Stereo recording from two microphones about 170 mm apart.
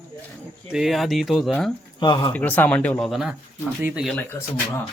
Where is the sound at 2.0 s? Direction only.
30° left (ahead or behind).